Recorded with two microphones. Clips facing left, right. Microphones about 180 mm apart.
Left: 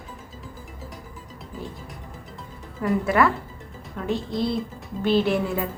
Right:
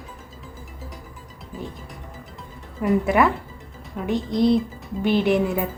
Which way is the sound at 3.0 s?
20° right (ahead or behind).